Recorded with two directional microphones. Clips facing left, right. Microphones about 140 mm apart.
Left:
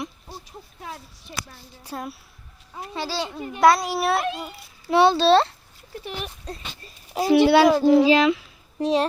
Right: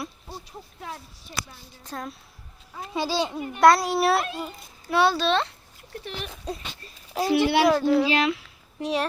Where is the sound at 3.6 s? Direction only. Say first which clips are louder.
Even; centre (ahead or behind).